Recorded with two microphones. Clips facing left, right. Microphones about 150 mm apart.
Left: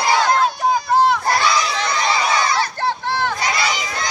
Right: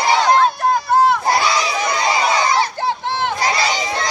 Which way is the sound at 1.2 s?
15° right (ahead or behind).